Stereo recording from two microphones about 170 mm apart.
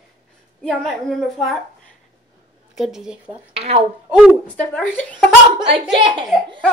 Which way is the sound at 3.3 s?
35° right (ahead or behind).